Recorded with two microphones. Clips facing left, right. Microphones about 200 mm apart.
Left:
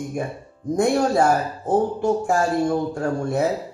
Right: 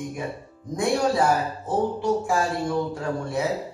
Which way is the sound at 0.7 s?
45° left (ahead or behind).